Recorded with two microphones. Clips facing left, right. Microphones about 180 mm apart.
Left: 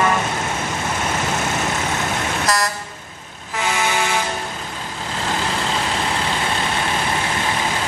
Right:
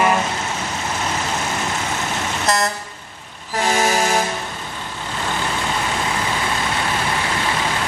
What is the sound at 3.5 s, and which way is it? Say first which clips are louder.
Music: right 3 dB; 35° right (ahead or behind).